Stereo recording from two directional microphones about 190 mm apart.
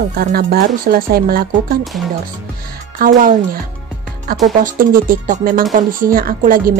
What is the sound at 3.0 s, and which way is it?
Speech, 45° right (ahead or behind).